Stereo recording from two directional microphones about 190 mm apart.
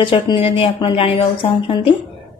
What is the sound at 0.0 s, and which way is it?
A woman's voice, 25° left (ahead or behind).